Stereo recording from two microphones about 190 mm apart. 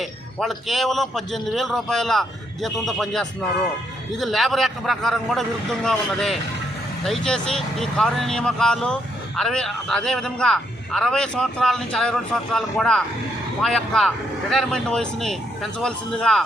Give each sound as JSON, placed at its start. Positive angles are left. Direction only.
{"t": 0.0, "sound": "speech", "side_deg": 0}